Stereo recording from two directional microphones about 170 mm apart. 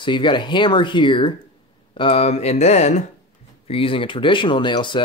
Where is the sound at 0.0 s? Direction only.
30° left (ahead or behind).